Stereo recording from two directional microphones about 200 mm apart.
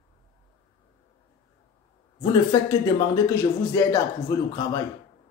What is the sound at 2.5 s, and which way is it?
Speech, 20° left (ahead or behind).